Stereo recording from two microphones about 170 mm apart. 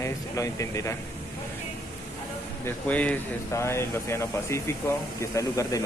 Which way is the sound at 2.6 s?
10° left (ahead or behind).